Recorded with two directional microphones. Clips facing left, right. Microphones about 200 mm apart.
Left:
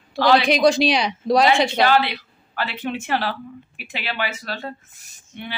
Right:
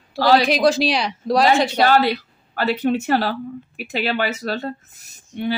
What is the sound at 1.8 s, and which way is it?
A woman's voice, 45° right (ahead or behind).